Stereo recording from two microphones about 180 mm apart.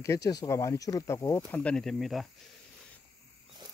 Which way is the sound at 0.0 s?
15° left (ahead or behind).